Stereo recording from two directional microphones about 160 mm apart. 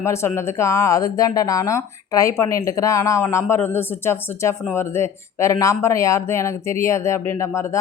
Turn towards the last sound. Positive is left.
turn(degrees=15)  # may be behind; listen again after turning